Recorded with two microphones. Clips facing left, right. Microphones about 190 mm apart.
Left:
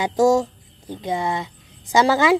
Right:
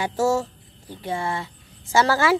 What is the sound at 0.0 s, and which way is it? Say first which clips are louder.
Speech: left 5 dB; 15° left (ahead or behind).